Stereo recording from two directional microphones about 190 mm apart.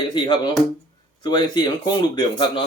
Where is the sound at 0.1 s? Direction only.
25° left (ahead or behind).